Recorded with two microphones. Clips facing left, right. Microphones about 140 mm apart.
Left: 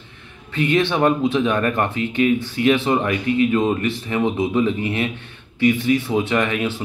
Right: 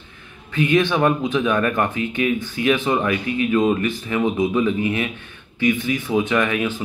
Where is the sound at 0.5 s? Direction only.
30° left (ahead or behind).